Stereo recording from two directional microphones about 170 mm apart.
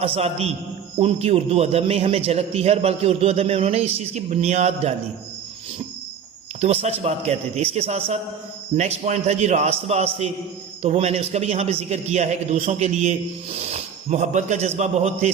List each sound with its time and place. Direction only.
0.0 s a man's voice: 35° right (ahead or behind)
6.8 s a man's voice: 40° right (ahead or behind)